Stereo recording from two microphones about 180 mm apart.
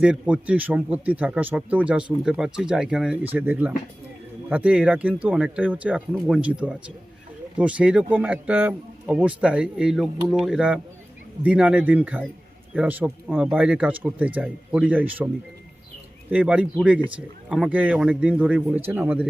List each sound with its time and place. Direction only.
0.0 s a man's voice: 5° right (ahead or behind)
16.3 s speech: 5° right (ahead or behind)